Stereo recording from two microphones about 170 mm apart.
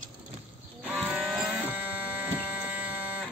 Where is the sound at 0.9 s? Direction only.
10° right (ahead or behind).